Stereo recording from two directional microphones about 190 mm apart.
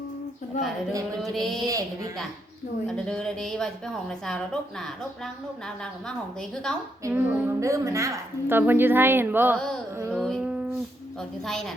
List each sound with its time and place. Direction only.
0.5 s speech: 40° left (ahead or behind)
1.2 s a woman's voice: centre (ahead or behind)
1.6 s a woman's voice: 20° right (ahead or behind)
2.8 s a woman's voice: 5° left (ahead or behind)
7.0 s a woman's voice: 15° right (ahead or behind)
9.6 s a woman's voice: 5° left (ahead or behind)
10.2 s music: centre (ahead or behind)
11.2 s a woman's voice: centre (ahead or behind)